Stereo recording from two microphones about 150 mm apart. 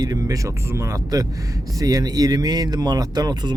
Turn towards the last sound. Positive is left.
turn(degrees=-25)  # may be behind; listen again after turning